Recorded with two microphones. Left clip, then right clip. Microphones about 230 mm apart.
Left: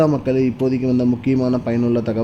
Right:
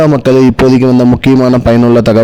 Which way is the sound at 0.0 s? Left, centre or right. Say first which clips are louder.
Right 10 dB; right.